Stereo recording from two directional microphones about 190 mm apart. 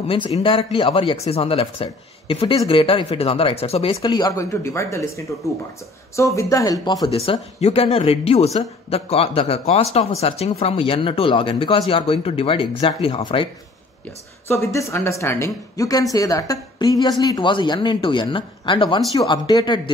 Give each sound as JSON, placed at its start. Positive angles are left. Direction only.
{"t": 0.1, "sound": "speech", "side_deg": 25}
{"t": 14.5, "sound": "speech", "side_deg": 15}